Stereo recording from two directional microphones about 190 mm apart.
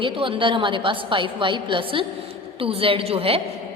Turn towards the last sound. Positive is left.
turn(degrees=-30)  # may be behind; listen again after turning